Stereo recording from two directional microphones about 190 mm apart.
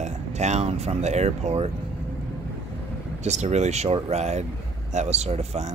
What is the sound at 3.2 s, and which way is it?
Speech, 35° right (ahead or behind).